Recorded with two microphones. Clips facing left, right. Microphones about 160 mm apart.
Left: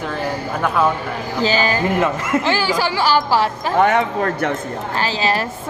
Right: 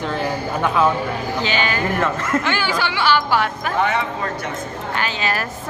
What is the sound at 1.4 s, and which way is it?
A woman's voice, 35° left (ahead or behind).